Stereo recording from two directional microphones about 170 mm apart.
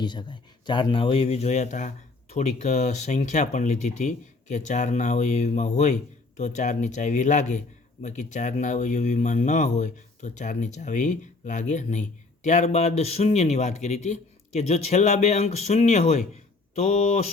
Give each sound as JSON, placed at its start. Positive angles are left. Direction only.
{"t": 0.0, "sound": "speech", "side_deg": 25}